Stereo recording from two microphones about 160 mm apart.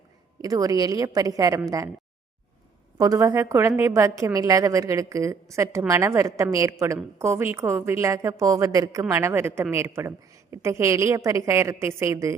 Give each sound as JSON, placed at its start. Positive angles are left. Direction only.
{"t": 0.4, "sound": "a woman's voice", "side_deg": -20}
{"t": 3.0, "sound": "a woman's voice", "side_deg": -20}